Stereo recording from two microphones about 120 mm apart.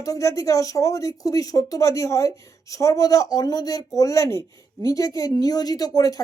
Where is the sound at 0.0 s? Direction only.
25° left (ahead or behind).